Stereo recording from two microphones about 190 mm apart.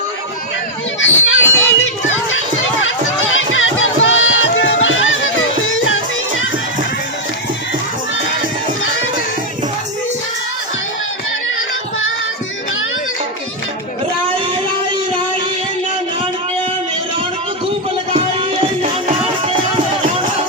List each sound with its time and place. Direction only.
1.0 s speech: 85° left
3.3 s crowd: 90° left
18.1 s music: 30° right (ahead or behind)